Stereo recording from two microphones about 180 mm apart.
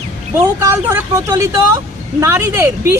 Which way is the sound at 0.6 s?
15° right (ahead or behind).